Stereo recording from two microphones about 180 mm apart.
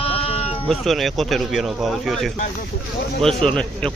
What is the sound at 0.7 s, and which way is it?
Speech, centre (ahead or behind).